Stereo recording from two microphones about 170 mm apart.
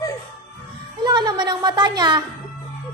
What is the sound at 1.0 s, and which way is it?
A woman's voice, 25° right (ahead or behind).